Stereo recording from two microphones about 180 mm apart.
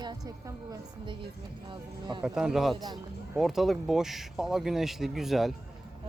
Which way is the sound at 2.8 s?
20° right (ahead or behind).